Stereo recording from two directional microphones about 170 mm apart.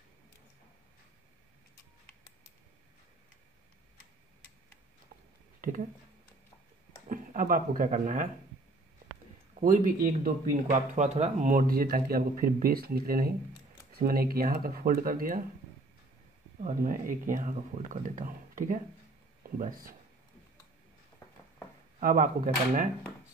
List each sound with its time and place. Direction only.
7.1 s speech: 50° right (ahead or behind)
9.6 s speech: 55° right (ahead or behind)
16.6 s speech: 50° right (ahead or behind)
22.0 s speech: 55° right (ahead or behind)